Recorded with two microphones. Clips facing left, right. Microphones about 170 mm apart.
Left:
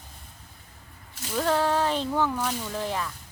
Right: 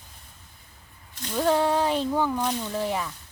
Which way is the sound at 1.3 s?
10° right (ahead or behind).